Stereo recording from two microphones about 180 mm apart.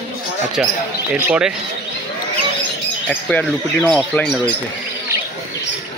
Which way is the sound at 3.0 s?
10° left (ahead or behind).